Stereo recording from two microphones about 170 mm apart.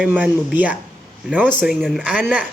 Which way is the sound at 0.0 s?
10° right (ahead or behind).